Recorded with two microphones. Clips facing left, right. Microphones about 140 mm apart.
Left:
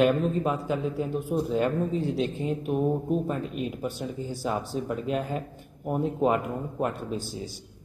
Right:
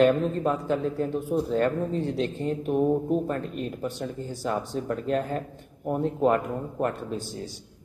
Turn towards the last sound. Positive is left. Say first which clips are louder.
# even
turn(degrees=10)  # may be behind; listen again after turning